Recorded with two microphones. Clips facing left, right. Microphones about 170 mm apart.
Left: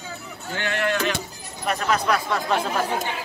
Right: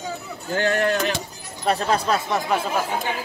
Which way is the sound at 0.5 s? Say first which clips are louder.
Right 4 dB; 40° right (ahead or behind).